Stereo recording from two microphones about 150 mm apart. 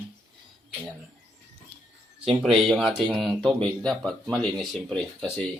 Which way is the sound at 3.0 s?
30° right (ahead or behind).